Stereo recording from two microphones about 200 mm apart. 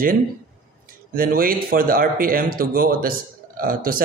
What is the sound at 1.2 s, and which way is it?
Speech, 45° right (ahead or behind).